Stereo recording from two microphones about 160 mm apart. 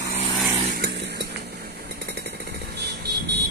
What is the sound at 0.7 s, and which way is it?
Chainsaw, 80° right.